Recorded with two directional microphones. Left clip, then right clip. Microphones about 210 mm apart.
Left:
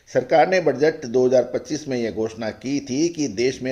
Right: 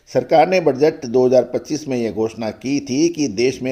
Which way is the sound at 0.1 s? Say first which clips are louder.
Right 3 dB; 30° right (ahead or behind).